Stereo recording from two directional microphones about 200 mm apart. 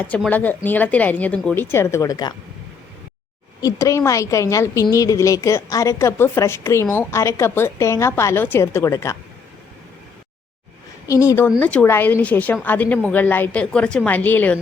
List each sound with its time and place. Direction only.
0.3 s a woman's voice: 10° left (ahead or behind)
3.6 s a woman's voice: 15° left (ahead or behind)
11.1 s a woman's voice: 15° left (ahead or behind)